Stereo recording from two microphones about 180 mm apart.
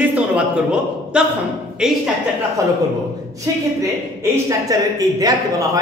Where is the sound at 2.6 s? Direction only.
20° right (ahead or behind).